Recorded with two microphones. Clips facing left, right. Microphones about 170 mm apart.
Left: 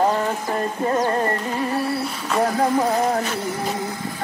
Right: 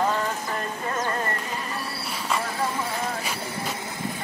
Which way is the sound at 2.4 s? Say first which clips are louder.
Left 9 dB; 50° left (ahead or behind).